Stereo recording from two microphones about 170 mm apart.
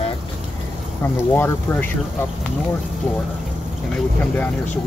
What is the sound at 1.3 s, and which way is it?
Speech, 10° left (ahead or behind).